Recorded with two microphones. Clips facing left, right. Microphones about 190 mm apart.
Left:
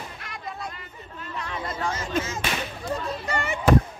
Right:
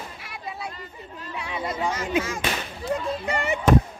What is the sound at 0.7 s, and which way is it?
Chatter, 35° right (ahead or behind).